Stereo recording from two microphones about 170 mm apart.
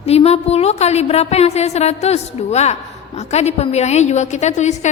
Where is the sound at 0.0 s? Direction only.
35° left (ahead or behind).